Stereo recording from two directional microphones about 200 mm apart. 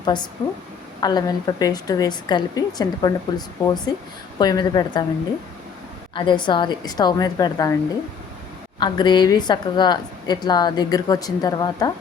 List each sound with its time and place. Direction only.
0.0 s a woman's voice: 20° left (ahead or behind)
6.1 s a woman's voice: 25° left (ahead or behind)
8.8 s a woman's voice: 20° left (ahead or behind)